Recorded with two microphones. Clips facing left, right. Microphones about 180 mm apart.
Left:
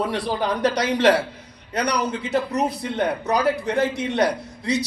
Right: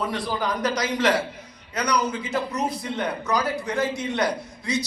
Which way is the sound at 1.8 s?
65° left (ahead or behind).